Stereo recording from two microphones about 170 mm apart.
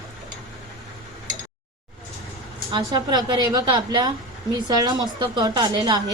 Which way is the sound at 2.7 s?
25° right (ahead or behind).